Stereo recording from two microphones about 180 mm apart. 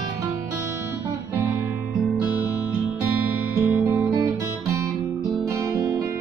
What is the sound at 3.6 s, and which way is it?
Music, 10° right (ahead or behind).